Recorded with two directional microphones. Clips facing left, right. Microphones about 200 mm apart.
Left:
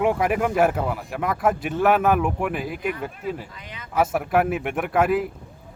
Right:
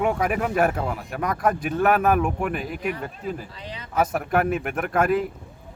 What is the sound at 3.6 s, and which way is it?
Speech, 30° right (ahead or behind).